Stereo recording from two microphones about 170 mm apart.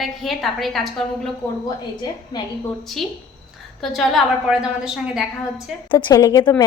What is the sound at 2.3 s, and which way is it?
Speech, 25° left (ahead or behind).